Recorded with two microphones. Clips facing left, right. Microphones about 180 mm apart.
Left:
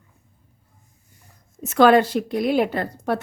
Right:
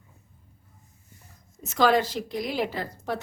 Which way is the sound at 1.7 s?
60° left (ahead or behind).